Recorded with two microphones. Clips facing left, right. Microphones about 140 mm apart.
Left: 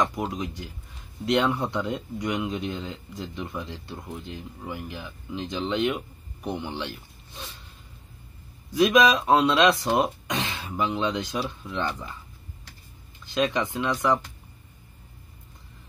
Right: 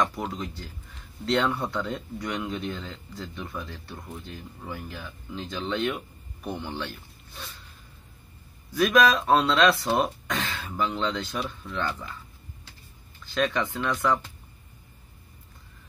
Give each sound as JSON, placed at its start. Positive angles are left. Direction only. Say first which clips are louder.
{"t": 0.0, "sound": "speech", "louder": "left 1 dB", "side_deg": 15}
{"t": 8.7, "sound": "speech", "louder": "left 2 dB", "side_deg": 20}
{"t": 13.2, "sound": "speech", "louder": "left 1 dB", "side_deg": 20}